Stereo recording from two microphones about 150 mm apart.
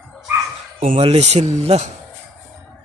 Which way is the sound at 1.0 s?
45° right (ahead or behind).